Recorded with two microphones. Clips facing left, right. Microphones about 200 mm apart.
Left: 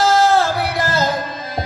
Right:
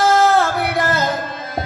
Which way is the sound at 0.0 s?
55° right (ahead or behind).